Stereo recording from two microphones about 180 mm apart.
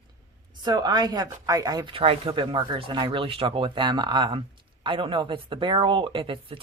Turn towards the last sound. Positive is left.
turn(degrees=-30)  # may be behind; listen again after turning